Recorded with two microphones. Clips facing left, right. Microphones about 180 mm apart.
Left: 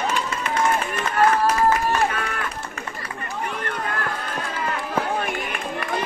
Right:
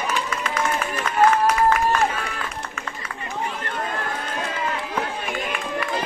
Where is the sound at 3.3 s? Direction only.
25° right (ahead or behind).